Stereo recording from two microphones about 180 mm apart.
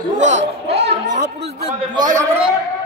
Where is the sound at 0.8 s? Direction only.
35° right (ahead or behind).